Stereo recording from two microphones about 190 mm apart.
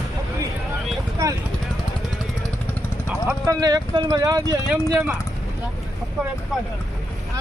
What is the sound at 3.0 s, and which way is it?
Speech, 20° right (ahead or behind).